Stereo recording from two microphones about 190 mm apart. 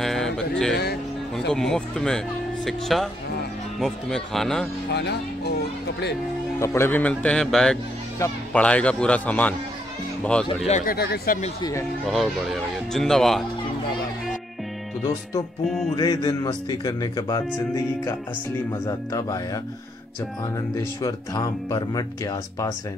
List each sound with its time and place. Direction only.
0.0 s a sound: centre (ahead or behind)
1.5 s speech: 5° left (ahead or behind)
4.9 s speech: 60° left (ahead or behind)
6.6 s speech: 15° left (ahead or behind)
10.7 s speech: 55° left (ahead or behind)
12.1 s speech: centre (ahead or behind)
15.6 s speech: centre (ahead or behind)
15.9 s speech: 20° left (ahead or behind)
18.7 s speech: 15° left (ahead or behind)
20.7 s speech: 20° left (ahead or behind)